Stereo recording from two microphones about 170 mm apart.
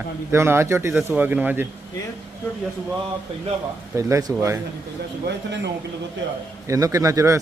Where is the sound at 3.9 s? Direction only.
15° right (ahead or behind).